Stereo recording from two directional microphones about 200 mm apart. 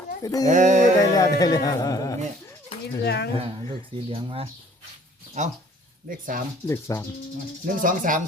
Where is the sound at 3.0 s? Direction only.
55° left (ahead or behind).